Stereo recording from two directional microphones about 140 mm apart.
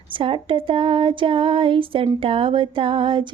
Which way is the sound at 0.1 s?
40° right (ahead or behind).